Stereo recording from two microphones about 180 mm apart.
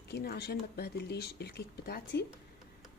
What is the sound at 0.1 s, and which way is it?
Speech, 60° left (ahead or behind).